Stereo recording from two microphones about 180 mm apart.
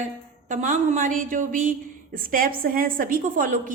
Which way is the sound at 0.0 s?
45° right (ahead or behind).